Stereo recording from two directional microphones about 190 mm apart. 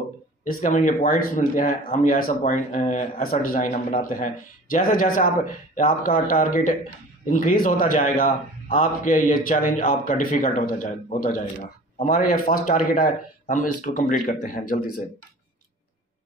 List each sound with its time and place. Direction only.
0.4 s a man's voice: 45° left (ahead or behind)